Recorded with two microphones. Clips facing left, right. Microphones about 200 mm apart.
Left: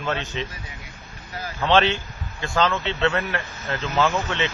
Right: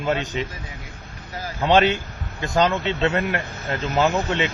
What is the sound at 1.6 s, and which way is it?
A man's voice, 15° right (ahead or behind).